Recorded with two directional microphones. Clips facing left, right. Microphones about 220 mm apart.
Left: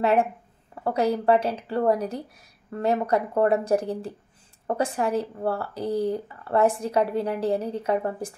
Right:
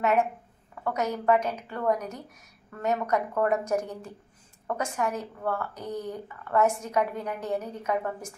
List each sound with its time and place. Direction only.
0.0 s speech: 30° left (ahead or behind)